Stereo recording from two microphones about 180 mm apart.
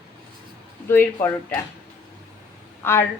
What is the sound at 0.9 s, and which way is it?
Speech, 10° left (ahead or behind).